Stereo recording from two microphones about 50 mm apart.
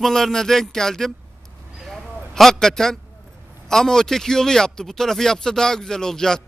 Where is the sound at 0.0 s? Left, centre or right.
Centre.